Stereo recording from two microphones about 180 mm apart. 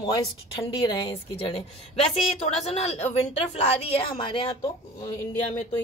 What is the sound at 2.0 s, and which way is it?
A woman's voice, 35° left (ahead or behind).